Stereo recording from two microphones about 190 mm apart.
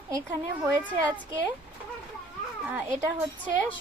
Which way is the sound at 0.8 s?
10° left (ahead or behind).